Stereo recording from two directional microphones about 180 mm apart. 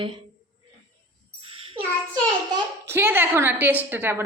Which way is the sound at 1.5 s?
30° right (ahead or behind).